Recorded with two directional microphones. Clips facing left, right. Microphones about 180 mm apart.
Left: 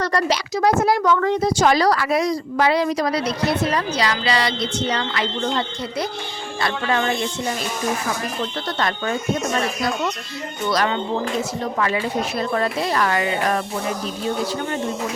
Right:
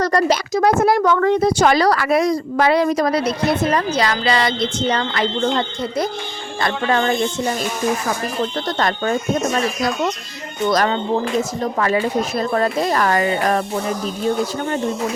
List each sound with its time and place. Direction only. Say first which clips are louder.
0.0 s speech: right 4 dB; 45° right (ahead or behind)
8.6 s speech: right 4 dB; 40° right (ahead or behind)
10.7 s speech: right 3 dB; 45° right (ahead or behind)